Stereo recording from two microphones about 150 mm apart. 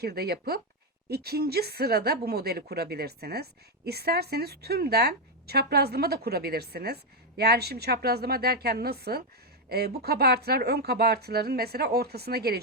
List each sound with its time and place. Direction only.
0.0 s a woman's voice: 90° right